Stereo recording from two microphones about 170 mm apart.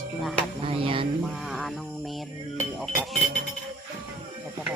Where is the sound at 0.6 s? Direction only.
30° right (ahead or behind).